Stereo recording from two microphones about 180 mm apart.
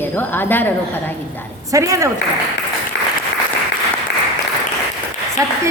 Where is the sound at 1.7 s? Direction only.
15° right (ahead or behind).